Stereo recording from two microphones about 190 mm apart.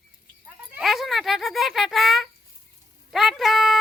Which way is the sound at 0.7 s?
Centre (ahead or behind).